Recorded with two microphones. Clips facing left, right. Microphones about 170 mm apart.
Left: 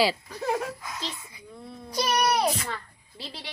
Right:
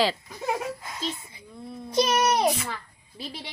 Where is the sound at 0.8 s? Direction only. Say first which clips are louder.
Right 3 dB; 25° right (ahead or behind).